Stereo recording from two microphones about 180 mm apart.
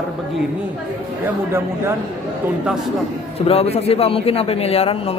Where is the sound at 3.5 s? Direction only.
35° left (ahead or behind).